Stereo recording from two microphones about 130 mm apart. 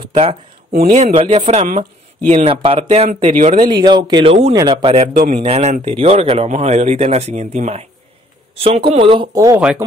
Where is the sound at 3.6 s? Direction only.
35° right (ahead or behind).